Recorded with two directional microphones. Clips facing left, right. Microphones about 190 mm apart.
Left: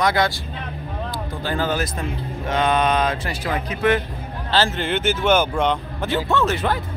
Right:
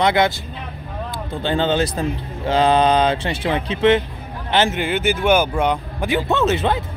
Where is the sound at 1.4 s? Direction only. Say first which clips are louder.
Right 5 dB; 25° right (ahead or behind).